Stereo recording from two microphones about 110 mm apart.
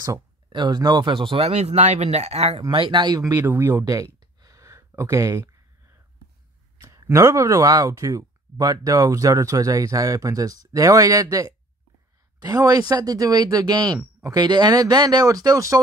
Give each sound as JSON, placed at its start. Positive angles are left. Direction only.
{"t": 0.5, "sound": "speech", "side_deg": -45}
{"t": 2.7, "sound": "speech", "side_deg": -45}
{"t": 3.3, "sound": "speech", "side_deg": -20}
{"t": 3.8, "sound": "a sound", "side_deg": -30}
{"t": 6.8, "sound": "speech", "side_deg": -25}